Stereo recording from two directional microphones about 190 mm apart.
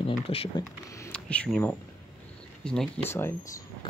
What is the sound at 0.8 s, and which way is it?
Speech, 15° left (ahead or behind).